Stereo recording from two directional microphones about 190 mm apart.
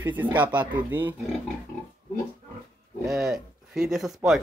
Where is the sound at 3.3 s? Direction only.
Centre (ahead or behind).